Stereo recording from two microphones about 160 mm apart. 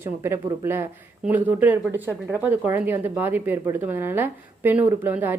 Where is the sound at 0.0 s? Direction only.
15° right (ahead or behind).